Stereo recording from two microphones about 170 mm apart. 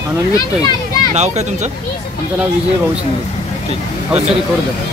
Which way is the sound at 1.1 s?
40° right (ahead or behind).